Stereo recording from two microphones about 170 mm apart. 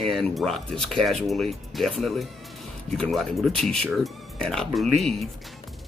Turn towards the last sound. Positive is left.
turn(degrees=0)  # may be behind; listen again after turning